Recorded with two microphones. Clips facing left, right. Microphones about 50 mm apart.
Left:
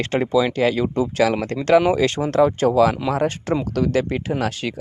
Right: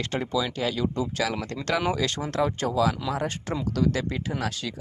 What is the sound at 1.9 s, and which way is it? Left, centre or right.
Speech, left.